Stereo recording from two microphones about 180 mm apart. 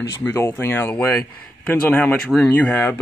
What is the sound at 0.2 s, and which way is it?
Speech, 15° left (ahead or behind).